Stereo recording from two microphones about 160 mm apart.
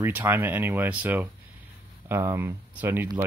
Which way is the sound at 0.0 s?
15° right (ahead or behind).